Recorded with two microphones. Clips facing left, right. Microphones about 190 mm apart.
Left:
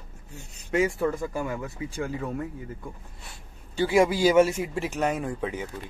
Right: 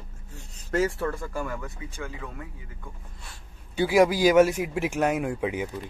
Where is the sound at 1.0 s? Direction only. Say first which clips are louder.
Left 3 dB; 15° left (ahead or behind).